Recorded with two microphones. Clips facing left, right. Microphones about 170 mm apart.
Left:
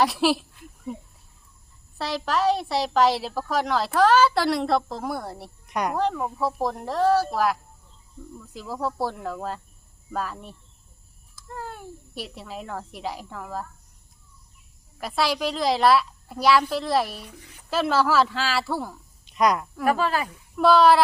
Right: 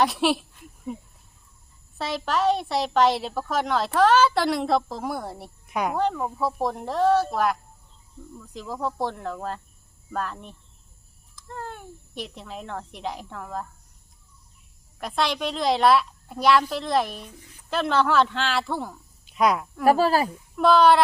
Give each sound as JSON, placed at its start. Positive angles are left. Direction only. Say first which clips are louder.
{"t": 0.0, "sound": "a sound", "louder": "left 1 dB", "side_deg": 0}
{"t": 2.0, "sound": "a woman's voice", "louder": "even", "side_deg": 0}
{"t": 14.9, "sound": "a woman's voice", "louder": "left 1 dB", "side_deg": 0}
{"t": 19.8, "sound": "speech", "louder": "right 5 dB", "side_deg": -35}
{"t": 20.6, "sound": "a woman's voice", "louder": "even", "side_deg": 0}